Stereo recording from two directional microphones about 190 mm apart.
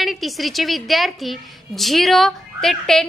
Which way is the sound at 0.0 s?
Centre (ahead or behind).